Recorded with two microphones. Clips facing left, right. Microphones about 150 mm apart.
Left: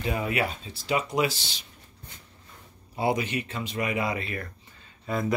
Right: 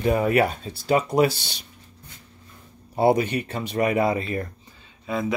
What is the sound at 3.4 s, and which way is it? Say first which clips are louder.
Speech: right 6 dB; 40° right (ahead or behind).